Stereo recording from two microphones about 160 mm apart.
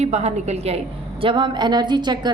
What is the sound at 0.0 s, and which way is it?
Speech, 45° right (ahead or behind).